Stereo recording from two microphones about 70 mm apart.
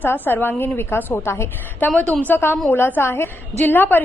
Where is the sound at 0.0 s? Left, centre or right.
Left.